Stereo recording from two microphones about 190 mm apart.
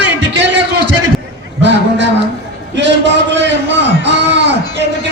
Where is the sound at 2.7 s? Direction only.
65° right (ahead or behind).